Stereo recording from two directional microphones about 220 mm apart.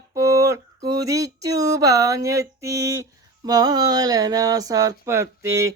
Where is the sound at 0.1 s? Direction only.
15° right (ahead or behind).